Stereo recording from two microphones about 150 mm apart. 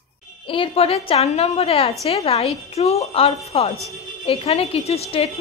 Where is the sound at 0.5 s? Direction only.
40° left (ahead or behind).